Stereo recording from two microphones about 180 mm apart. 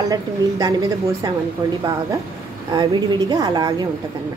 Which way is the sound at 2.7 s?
25° right (ahead or behind).